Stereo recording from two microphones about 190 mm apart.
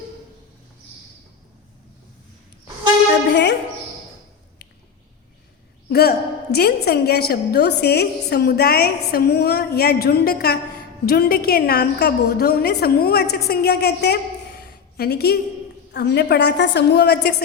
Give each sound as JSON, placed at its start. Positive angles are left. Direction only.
{"t": 5.9, "sound": "a woman's voice", "side_deg": 55}
{"t": 14.6, "sound": "a sound", "side_deg": 55}
{"t": 15.9, "sound": "a woman's voice", "side_deg": 60}